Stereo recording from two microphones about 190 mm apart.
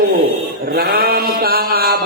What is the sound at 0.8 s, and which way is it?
A man's voice, 55° right (ahead or behind).